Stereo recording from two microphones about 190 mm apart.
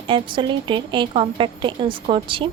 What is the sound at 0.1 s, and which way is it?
A woman's voice, 25° right (ahead or behind).